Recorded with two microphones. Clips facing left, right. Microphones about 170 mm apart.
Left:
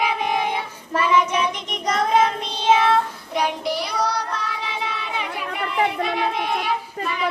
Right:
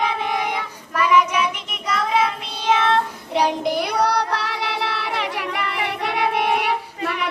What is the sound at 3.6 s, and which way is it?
Child singing, 50° right (ahead or behind).